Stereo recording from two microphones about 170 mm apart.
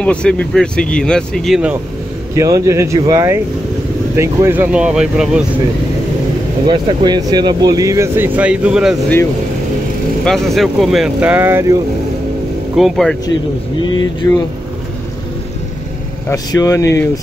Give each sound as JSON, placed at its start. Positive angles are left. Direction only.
{"t": 0.0, "sound": "speech", "side_deg": 5}
{"t": 2.3, "sound": "speech", "side_deg": -20}
{"t": 6.6, "sound": "speech", "side_deg": -30}
{"t": 10.2, "sound": "speech", "side_deg": 0}
{"t": 12.7, "sound": "speech", "side_deg": 0}
{"t": 14.2, "sound": "speech", "side_deg": 15}
{"t": 16.3, "sound": "speech", "side_deg": 20}